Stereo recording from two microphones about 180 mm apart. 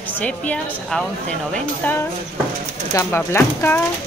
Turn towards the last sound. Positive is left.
turn(degrees=15)  # may be behind; listen again after turning